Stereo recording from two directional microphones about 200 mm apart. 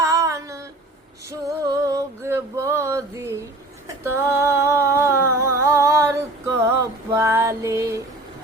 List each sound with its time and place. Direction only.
0.0 s female singing: 15° right (ahead or behind)
1.3 s music: 15° right (ahead or behind)
4.1 s a sound: 15° right (ahead or behind)
6.6 s music: 10° right (ahead or behind)